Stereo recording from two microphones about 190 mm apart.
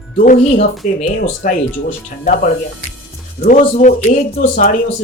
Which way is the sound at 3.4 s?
40° left (ahead or behind).